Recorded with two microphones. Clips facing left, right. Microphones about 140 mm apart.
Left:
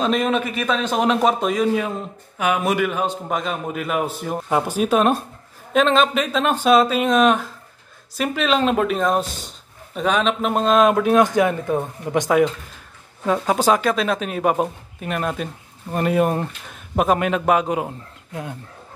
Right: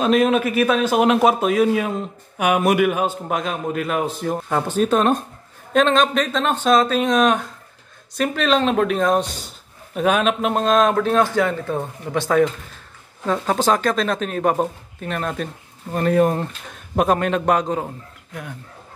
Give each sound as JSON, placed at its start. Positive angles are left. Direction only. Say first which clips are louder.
{"t": 0.0, "sound": "a man's voice", "louder": "right 3 dB", "side_deg": -5}
{"t": 2.3, "sound": "a man's voice", "louder": "right 3 dB", "side_deg": -15}